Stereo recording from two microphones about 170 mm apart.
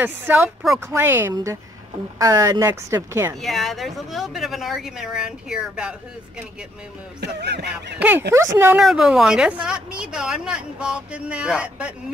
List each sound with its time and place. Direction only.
0.0 s speech: 10° right (ahead or behind)
3.4 s a woman's voice: centre (ahead or behind)
7.2 s music: 75° right (ahead or behind)
8.3 s a woman's voice: 15° right (ahead or behind)